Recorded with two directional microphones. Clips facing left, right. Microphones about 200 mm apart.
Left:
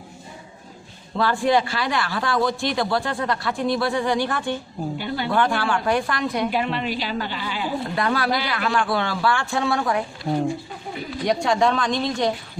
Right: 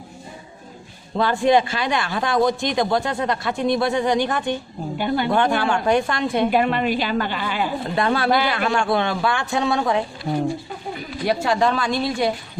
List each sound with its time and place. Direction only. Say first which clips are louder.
1.1 s speech: right 3 dB; 20° right (ahead or behind)
4.9 s a woman's voice: right 8 dB; 50° right (ahead or behind)
5.3 s speech: left 1 dB; 20° right (ahead or behind)
6.5 s a woman's voice: right 5 dB; 55° right (ahead or behind)
7.8 s speech: right 2 dB; 25° right (ahead or behind)
11.2 s speech: even; 5° right (ahead or behind)